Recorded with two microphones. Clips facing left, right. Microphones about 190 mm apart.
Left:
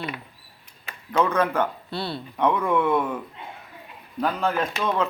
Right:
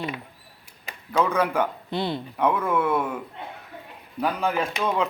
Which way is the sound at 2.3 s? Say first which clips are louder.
Left 2 dB; 5° right (ahead or behind).